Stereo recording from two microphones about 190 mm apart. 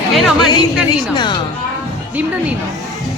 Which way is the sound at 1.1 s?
25° left (ahead or behind).